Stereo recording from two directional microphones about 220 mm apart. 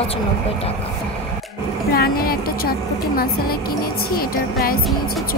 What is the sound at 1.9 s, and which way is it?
A woman's voice, 45° left (ahead or behind).